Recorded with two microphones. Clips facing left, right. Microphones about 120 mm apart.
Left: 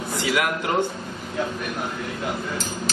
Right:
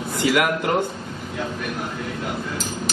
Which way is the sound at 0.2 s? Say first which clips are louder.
Right 4 dB; 55° right (ahead or behind).